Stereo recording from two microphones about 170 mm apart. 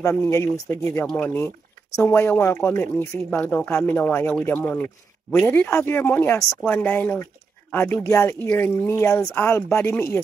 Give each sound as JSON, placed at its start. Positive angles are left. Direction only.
{"t": 0.0, "sound": "speech", "side_deg": 15}